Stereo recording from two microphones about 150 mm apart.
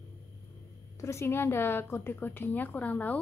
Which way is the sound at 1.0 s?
15° left (ahead or behind).